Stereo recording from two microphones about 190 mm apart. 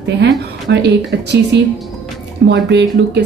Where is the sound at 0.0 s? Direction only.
65° right (ahead or behind).